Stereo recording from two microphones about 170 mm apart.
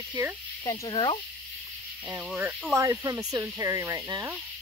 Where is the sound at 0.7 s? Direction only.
30° left (ahead or behind).